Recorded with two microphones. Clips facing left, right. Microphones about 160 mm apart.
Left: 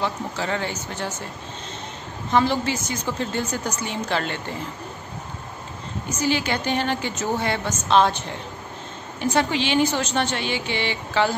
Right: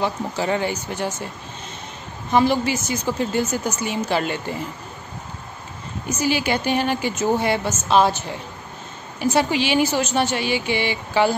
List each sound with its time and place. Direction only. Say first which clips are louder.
0.0 s a woman's voice: right 3 dB; 15° right (ahead or behind)
2.3 s a woman's voice: right 3 dB; 10° right (ahead or behind)
6.0 s a woman's voice: right 2 dB; 10° right (ahead or behind)
9.2 s a woman's voice: right 2 dB; 5° right (ahead or behind)